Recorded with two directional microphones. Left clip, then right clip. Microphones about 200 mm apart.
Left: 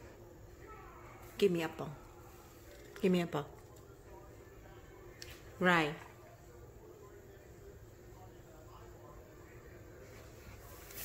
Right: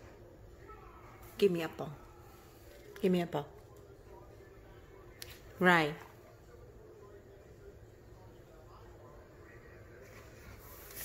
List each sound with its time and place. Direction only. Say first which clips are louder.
1.3 s speech: right 2 dB; 5° right (ahead or behind)
2.9 s speech: right 1 dB; 5° right (ahead or behind)
5.6 s speech: right 3 dB; 15° right (ahead or behind)